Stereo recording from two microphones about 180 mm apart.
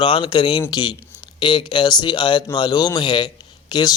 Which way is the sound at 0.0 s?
25° left (ahead or behind).